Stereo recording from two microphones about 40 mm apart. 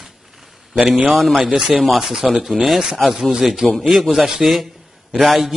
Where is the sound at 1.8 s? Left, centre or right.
Centre.